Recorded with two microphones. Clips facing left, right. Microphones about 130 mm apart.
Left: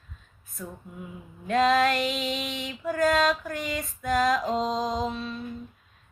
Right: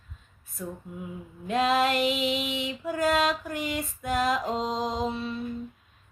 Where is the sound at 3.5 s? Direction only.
10° right (ahead or behind).